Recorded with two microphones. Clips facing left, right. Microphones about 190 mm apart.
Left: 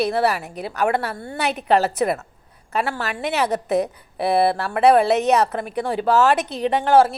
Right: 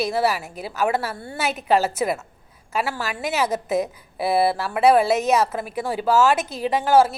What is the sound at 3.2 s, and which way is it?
Speech, 35° left (ahead or behind).